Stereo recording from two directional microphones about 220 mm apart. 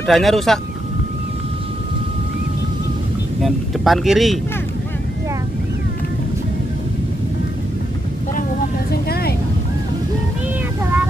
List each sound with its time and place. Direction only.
0.0 s speech: centre (ahead or behind)
3.4 s speech: centre (ahead or behind)
8.4 s vehicle: 45° left (ahead or behind)